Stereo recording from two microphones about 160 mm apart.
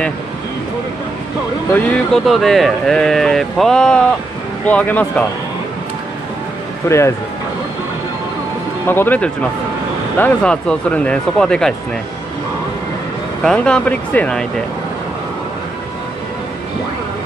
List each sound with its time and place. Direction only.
1.7 s speech: 5° left (ahead or behind)
6.9 s speech: 15° left (ahead or behind)
8.8 s speech: 15° left (ahead or behind)
13.4 s speech: 5° left (ahead or behind)